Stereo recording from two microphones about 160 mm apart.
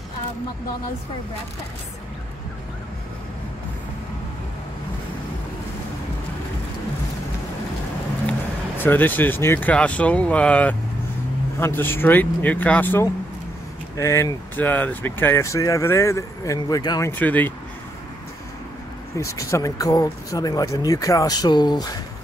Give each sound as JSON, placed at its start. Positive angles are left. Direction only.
{"t": 8.3, "sound": "speech", "side_deg": 10}
{"t": 17.1, "sound": "speech", "side_deg": 10}
{"t": 19.1, "sound": "speech", "side_deg": 20}